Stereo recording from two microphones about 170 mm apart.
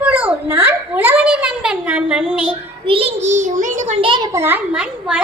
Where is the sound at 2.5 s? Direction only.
30° right (ahead or behind).